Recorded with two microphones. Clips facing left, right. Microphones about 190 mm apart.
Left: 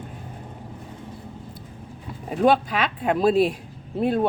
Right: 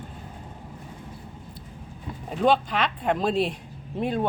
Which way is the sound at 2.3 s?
10° left (ahead or behind).